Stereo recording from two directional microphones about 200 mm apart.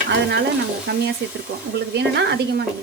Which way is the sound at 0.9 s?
55° right (ahead or behind).